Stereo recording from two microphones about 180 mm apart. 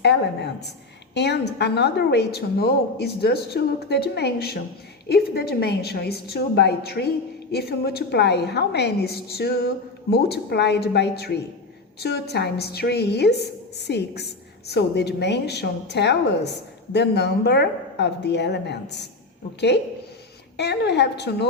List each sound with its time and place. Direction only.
1.1 s a woman's voice: 70° left (ahead or behind)